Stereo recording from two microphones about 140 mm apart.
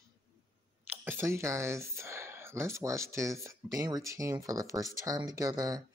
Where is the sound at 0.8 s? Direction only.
15° right (ahead or behind).